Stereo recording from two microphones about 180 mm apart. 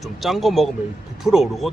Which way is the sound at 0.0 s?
Centre (ahead or behind).